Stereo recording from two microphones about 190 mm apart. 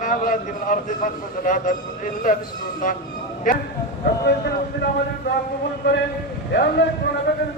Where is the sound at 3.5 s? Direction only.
45° left (ahead or behind).